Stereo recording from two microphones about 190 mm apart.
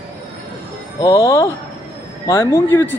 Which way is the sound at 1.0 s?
15° left (ahead or behind).